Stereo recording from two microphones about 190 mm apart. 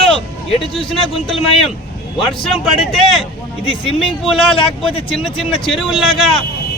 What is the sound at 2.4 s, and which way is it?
Speech, centre (ahead or behind).